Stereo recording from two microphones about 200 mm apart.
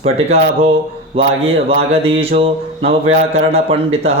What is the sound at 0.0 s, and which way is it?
Speech, 30° right (ahead or behind).